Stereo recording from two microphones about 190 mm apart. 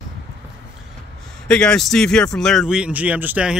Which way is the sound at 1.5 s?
5° left (ahead or behind).